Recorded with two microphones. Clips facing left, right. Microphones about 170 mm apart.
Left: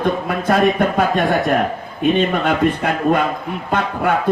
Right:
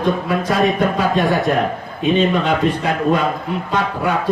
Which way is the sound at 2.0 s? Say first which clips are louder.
Even; 55° left (ahead or behind).